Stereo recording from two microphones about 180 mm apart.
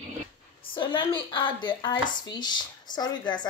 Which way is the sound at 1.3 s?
25° left (ahead or behind).